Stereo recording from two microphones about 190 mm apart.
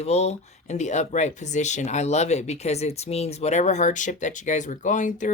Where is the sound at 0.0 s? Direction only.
35° left (ahead or behind).